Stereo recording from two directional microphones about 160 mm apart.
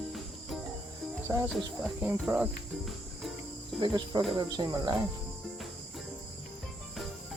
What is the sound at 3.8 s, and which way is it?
Cricket, 30° right (ahead or behind).